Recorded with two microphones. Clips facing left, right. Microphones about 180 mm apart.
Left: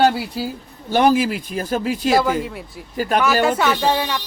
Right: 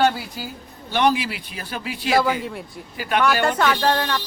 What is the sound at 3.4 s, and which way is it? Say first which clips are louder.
Speech: left 2 dB; 5° left (ahead or behind).